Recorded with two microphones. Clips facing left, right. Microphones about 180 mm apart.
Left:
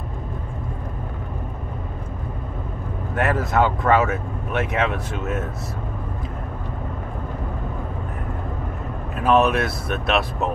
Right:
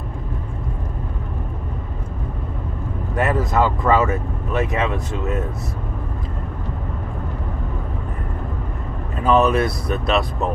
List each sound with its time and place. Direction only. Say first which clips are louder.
3.2 s speech: right 1 dB; centre (ahead or behind)
9.2 s speech: right 2 dB; centre (ahead or behind)